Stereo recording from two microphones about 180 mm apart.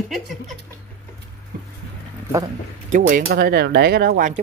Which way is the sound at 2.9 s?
55° right (ahead or behind).